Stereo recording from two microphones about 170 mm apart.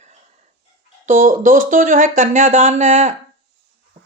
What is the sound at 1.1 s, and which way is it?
Speech, 50° right (ahead or behind).